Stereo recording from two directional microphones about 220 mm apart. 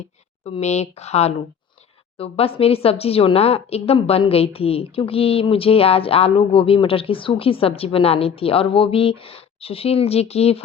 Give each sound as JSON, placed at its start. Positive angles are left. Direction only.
{"t": 0.4, "sound": "speech", "side_deg": 30}